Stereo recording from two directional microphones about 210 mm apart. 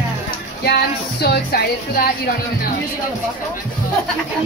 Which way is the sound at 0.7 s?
50° left (ahead or behind).